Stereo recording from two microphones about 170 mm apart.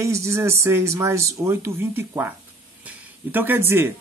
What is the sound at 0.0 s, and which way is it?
Speech, 15° right (ahead or behind).